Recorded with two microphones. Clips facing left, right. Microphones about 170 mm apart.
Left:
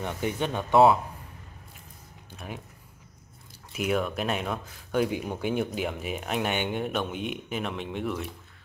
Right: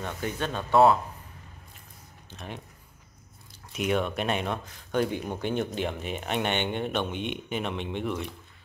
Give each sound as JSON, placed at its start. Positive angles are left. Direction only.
{"t": 0.0, "sound": "speech", "side_deg": 15}
{"t": 2.3, "sound": "speech", "side_deg": 5}
{"t": 3.7, "sound": "speech", "side_deg": 0}